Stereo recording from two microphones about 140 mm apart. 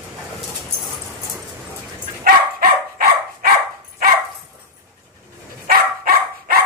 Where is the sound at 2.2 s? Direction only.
90° right.